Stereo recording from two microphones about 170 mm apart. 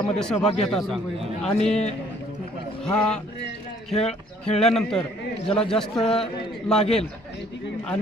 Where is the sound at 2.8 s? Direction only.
5° left (ahead or behind).